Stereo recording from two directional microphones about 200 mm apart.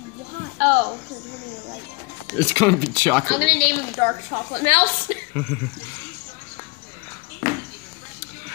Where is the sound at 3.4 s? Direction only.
45° right (ahead or behind).